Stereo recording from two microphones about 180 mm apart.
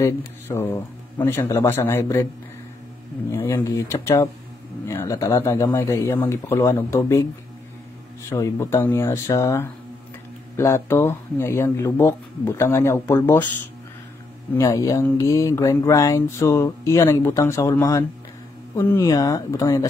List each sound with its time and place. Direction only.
0.0 s speech: 15° left (ahead or behind)
3.3 s speech: 15° left (ahead or behind)
8.3 s speech: 15° left (ahead or behind)
14.5 s speech: 20° left (ahead or behind)